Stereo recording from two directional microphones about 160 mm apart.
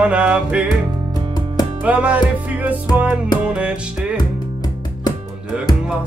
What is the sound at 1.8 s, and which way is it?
Music, 10° right (ahead or behind).